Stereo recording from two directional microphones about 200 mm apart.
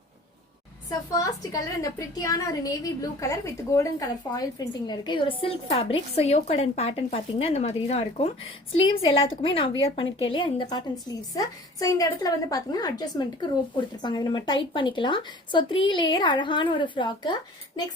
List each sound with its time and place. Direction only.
0.9 s a woman's voice: 15° left (ahead or behind)